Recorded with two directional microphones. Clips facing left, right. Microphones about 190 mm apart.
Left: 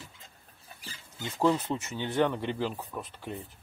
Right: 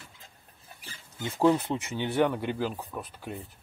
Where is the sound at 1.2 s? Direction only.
10° right (ahead or behind).